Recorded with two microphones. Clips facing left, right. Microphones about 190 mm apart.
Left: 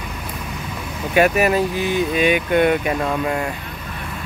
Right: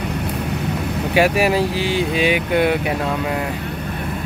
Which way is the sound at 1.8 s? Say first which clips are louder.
Even; 85° right.